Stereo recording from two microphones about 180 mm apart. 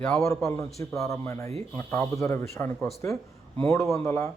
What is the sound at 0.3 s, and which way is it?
A man's voice, 15° left (ahead or behind).